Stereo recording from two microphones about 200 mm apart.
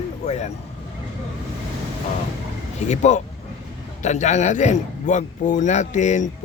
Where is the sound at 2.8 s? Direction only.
35° left (ahead or behind).